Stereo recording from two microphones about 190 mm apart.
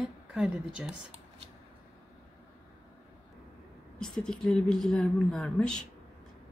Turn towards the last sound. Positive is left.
turn(degrees=5)  # may be behind; listen again after turning